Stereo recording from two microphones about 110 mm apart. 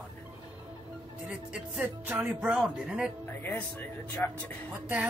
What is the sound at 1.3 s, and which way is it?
Speech, 15° right (ahead or behind).